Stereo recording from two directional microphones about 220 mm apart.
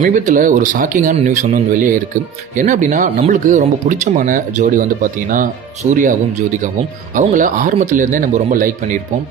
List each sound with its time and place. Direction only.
0.0 s speech: 35° right (ahead or behind)